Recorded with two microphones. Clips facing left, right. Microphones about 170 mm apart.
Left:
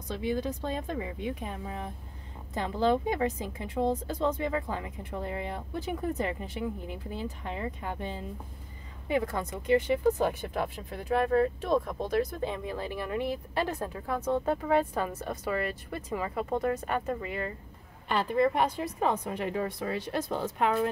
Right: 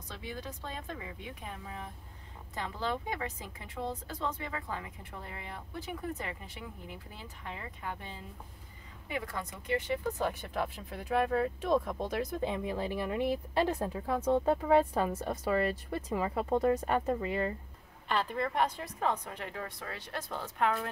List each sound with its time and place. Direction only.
0.1 s speech: 20° left (ahead or behind)
9.2 s a woman's voice: 40° left (ahead or behind)
9.7 s a woman's voice: 20° left (ahead or behind)
10.4 s speech: 5° left (ahead or behind)
12.1 s speech: 20° right (ahead or behind)
18.0 s a woman's voice: 5° left (ahead or behind)